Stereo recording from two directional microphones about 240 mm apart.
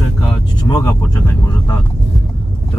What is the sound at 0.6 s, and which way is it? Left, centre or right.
Speech, centre.